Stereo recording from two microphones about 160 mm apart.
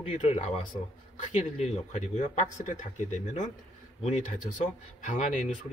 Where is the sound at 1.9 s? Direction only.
50° left (ahead or behind).